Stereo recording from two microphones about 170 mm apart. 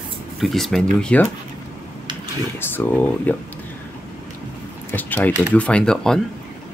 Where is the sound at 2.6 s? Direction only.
10° left (ahead or behind).